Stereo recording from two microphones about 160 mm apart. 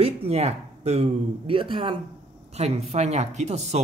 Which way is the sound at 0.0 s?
40° right (ahead or behind).